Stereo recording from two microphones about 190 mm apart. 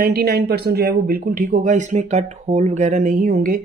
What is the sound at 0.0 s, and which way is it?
Speech, 55° right (ahead or behind).